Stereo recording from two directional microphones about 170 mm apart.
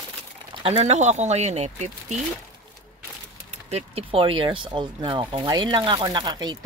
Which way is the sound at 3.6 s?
35° right (ahead or behind).